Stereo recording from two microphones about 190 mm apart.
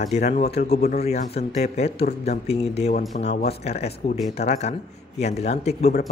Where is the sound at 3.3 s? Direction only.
55° left (ahead or behind).